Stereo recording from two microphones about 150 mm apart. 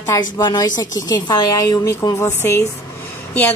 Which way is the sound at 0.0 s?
25° left (ahead or behind).